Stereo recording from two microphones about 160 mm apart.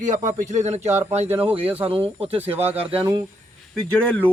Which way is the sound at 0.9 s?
15° right (ahead or behind).